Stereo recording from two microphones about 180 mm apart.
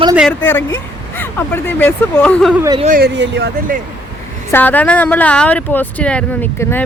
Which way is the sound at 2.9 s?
70° right (ahead or behind).